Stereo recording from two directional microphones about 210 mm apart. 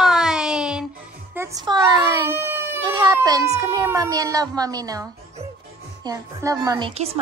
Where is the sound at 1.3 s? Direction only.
15° right (ahead or behind).